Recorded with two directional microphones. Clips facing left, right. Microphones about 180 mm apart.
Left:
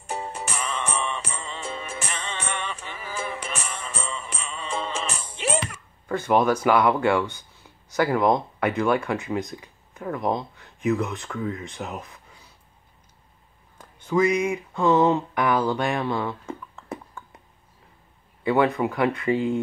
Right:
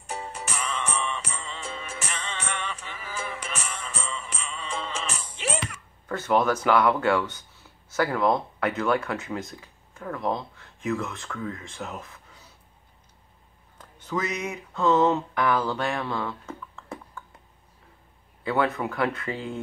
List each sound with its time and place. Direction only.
0.1 s music: 30° left (ahead or behind)
6.0 s speech: 10° left (ahead or behind)
13.7 s speech: 10° left (ahead or behind)
18.4 s speech: 15° left (ahead or behind)